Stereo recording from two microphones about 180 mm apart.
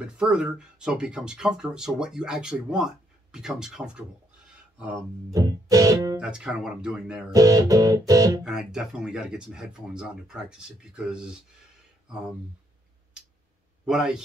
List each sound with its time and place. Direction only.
0.0 s speech: 5° right (ahead or behind)
5.3 s music: 20° right (ahead or behind)
6.1 s speech: 5° right (ahead or behind)
7.3 s music: 20° right (ahead or behind)
8.5 s speech: 5° right (ahead or behind)
13.8 s speech: 5° right (ahead or behind)